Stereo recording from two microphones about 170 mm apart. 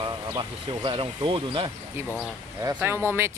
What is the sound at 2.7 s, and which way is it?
Speech, 10° right (ahead or behind).